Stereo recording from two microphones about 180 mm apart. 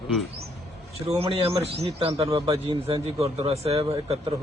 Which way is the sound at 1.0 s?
35° right (ahead or behind).